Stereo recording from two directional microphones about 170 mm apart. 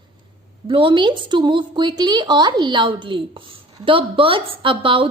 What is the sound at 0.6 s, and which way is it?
A woman's voice, 30° right (ahead or behind).